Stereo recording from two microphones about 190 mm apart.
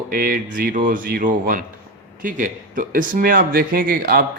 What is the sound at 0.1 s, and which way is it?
A man's voice, 50° right (ahead or behind).